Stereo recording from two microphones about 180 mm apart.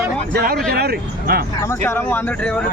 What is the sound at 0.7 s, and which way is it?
Speech, 60° right (ahead or behind).